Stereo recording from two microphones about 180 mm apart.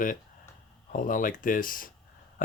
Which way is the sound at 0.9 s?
50° left (ahead or behind).